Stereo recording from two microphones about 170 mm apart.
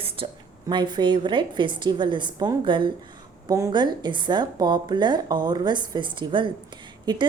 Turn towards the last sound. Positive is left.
turn(degrees=-25)  # may be behind; listen again after turning